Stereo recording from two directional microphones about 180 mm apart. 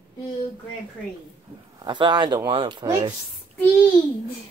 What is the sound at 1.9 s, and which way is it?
Speech, 25° right (ahead or behind).